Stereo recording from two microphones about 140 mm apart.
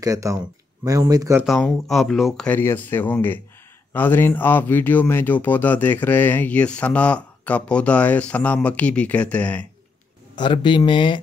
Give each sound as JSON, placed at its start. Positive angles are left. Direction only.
{"t": 0.0, "sound": "speech", "side_deg": -25}
{"t": 1.4, "sound": "speech", "side_deg": 0}
{"t": 10.3, "sound": "speech", "side_deg": 35}